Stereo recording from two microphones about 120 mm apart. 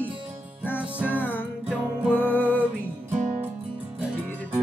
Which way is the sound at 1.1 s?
15° left (ahead or behind).